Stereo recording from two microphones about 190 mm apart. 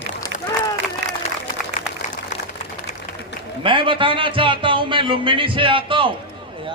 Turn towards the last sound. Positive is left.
turn(degrees=-25)  # may be behind; listen again after turning